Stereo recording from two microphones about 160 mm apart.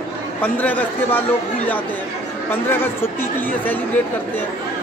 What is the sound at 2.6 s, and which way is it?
Speech, 15° left (ahead or behind).